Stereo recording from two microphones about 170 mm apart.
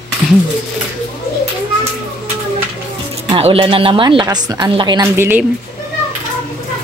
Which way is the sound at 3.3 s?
35° right (ahead or behind).